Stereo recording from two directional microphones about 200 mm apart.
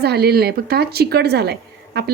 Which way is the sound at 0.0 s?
55° right (ahead or behind).